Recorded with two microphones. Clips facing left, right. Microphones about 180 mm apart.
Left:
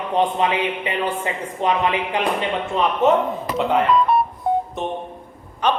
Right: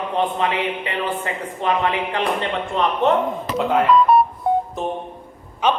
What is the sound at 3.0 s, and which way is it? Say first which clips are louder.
Speech: left 2 dB; centre (ahead or behind).